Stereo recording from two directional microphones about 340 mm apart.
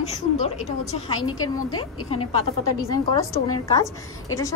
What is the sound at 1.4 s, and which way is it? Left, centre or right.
A woman's voice, centre.